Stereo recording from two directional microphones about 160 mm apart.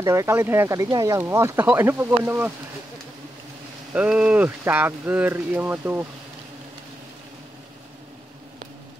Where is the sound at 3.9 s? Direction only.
10° right (ahead or behind).